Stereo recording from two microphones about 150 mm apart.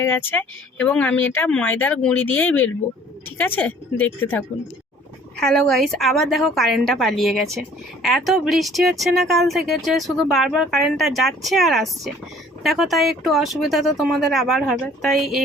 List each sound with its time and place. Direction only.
0.0 s speech: 15° left (ahead or behind)
5.4 s speech: 5° left (ahead or behind)